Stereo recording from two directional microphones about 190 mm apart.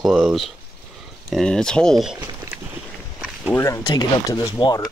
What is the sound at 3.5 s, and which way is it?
Speech, 15° left (ahead or behind).